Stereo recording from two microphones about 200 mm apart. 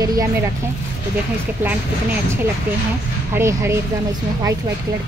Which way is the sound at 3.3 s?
15° right (ahead or behind).